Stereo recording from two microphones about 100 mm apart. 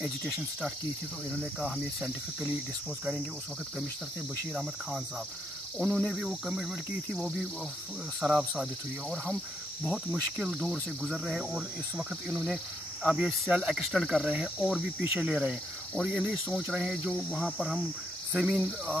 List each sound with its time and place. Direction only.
0.0 s speech: 5° right (ahead or behind)
1.3 s cricket: 15° right (ahead or behind)
5.8 s cricket: 5° right (ahead or behind)
9.1 s speech: centre (ahead or behind)
13.0 s cricket: 10° right (ahead or behind)
13.3 s speech: centre (ahead or behind)
14.2 s cricket: 10° right (ahead or behind)
16.0 s speech: 5° right (ahead or behind)
18.3 s cricket: 10° right (ahead or behind)